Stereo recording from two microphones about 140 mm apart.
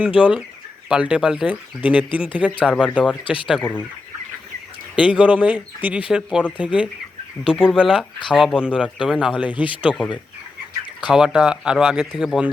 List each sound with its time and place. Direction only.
0.2 s speech: 10° right (ahead or behind)
3.2 s speech: 35° left (ahead or behind)
3.6 s fowl: 15° left (ahead or behind)
4.9 s speech: 10° right (ahead or behind)
8.3 s speech: 5° left (ahead or behind)
8.5 s speech: 5° right (ahead or behind)
9.5 s speech: 35° left (ahead or behind)
9.8 s speech: centre (ahead or behind)
11.1 s speech: 5° right (ahead or behind)